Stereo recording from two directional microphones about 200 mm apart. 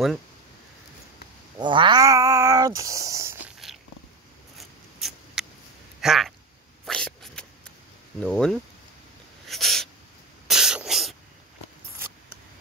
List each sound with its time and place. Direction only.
1.6 s cat: 25° right (ahead or behind)
3.5 s cat: centre (ahead or behind)
4.6 s mouse: centre (ahead or behind)
5.9 s a sound: centre (ahead or behind)
8.2 s speech: 5° left (ahead or behind)
9.5 s a sound: centre (ahead or behind)
10.5 s spray: 5° right (ahead or behind)